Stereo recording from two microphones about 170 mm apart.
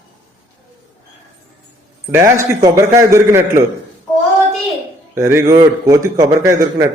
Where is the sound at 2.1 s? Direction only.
15° right (ahead or behind).